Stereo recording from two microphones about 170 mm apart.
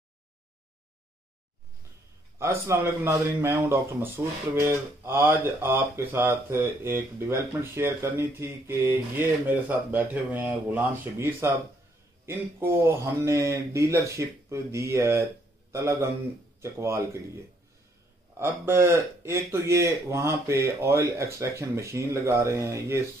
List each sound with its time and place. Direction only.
2.3 s speech: 15° right (ahead or behind)
18.4 s speech: 15° right (ahead or behind)